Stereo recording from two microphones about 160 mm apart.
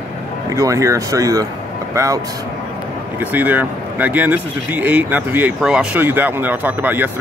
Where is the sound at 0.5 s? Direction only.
20° right (ahead or behind).